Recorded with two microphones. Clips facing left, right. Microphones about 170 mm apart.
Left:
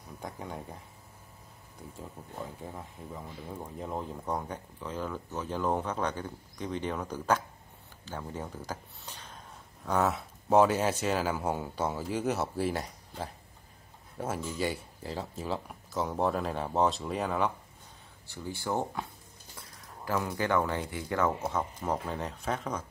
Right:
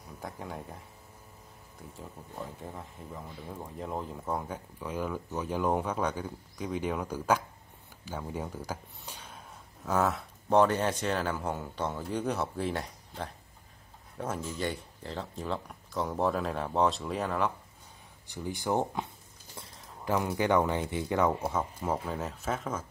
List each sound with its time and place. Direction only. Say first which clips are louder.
0.2 s speech: even; centre (ahead or behind)
2.0 s speech: even; centre (ahead or behind)
8.0 s a sound: right 2 dB; 10° right (ahead or behind)
9.8 s speech: even; centre (ahead or behind)
18.2 s speech: right 2 dB; 15° right (ahead or behind)
20.1 s speech: right 2 dB; 15° right (ahead or behind)
21.5 s speech: even; 10° right (ahead or behind)